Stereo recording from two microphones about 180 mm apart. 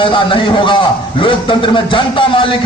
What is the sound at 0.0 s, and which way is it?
A man's voice, 30° left (ahead or behind).